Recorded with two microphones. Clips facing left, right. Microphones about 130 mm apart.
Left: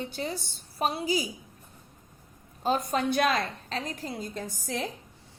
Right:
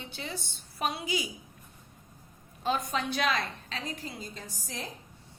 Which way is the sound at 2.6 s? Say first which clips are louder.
Left 4 dB; 40° left (ahead or behind).